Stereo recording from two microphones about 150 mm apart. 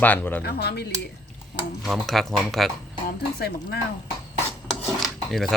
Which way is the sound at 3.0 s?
90° left.